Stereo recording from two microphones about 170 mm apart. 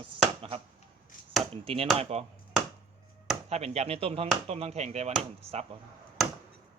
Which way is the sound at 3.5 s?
40° right (ahead or behind).